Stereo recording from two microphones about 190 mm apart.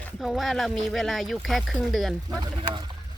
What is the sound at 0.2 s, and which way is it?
Speech, centre (ahead or behind).